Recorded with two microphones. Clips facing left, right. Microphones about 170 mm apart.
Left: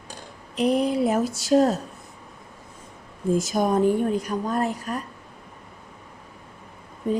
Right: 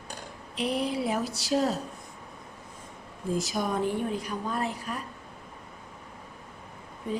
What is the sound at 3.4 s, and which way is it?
A woman's voice, 50° left (ahead or behind).